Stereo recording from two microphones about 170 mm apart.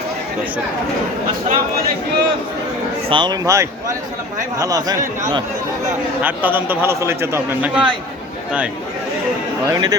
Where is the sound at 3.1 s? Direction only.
25° right (ahead or behind).